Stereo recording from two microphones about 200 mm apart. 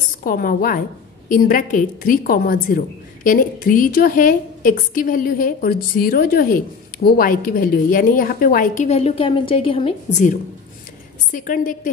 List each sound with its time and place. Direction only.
0.2 s a woman's voice: 45° left (ahead or behind)
11.3 s a woman's voice: 40° left (ahead or behind)